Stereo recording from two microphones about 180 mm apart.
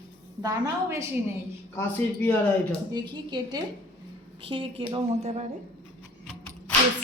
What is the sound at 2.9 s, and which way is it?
Speech, 20° right (ahead or behind).